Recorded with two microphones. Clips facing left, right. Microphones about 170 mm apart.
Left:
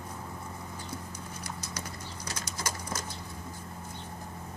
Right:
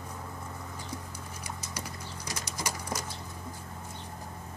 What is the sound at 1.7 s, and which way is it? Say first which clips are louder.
Bird: even; 10° right (ahead or behind).